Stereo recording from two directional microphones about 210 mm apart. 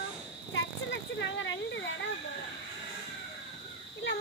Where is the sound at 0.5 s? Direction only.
60° left (ahead or behind).